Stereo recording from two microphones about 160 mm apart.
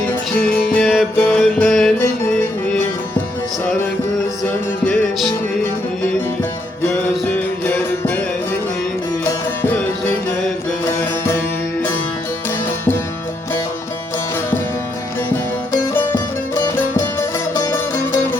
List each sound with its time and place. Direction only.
0.7 s music: 5° left (ahead or behind)
4.4 s music: 5° left (ahead or behind)
9.2 s music: 15° left (ahead or behind)
15.7 s music: 20° left (ahead or behind)